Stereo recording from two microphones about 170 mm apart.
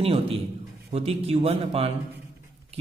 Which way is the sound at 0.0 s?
35° right (ahead or behind).